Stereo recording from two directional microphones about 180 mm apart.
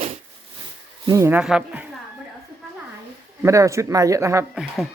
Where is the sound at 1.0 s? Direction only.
15° right (ahead or behind).